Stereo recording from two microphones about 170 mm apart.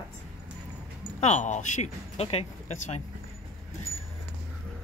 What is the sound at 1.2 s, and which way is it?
Speech, 45° left (ahead or behind).